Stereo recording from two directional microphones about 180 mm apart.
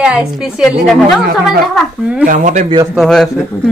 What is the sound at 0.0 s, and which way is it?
Speech, 5° right (ahead or behind).